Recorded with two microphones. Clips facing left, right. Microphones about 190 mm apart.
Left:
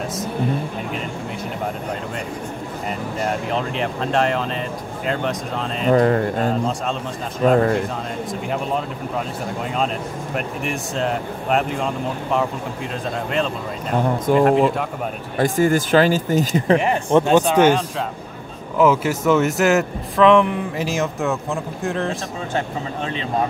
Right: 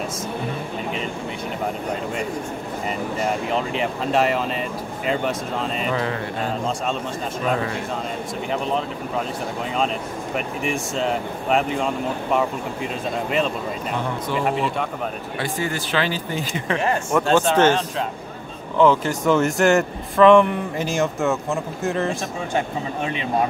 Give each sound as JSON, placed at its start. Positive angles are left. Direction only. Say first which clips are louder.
{"t": 3.2, "sound": "speech", "louder": "left 1 dB", "side_deg": 0}
{"t": 5.9, "sound": "speech", "louder": "left 13 dB", "side_deg": 45}
{"t": 7.4, "sound": "speech", "louder": "left 9 dB", "side_deg": 45}
{"t": 10.3, "sound": "speech", "louder": "right 1 dB", "side_deg": 0}
{"t": 14.3, "sound": "speech", "louder": "left 8 dB", "side_deg": 45}
{"t": 17.3, "sound": "speech", "louder": "even", "side_deg": 15}